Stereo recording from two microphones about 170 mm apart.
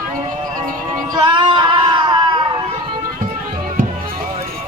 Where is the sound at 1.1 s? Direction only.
25° right (ahead or behind).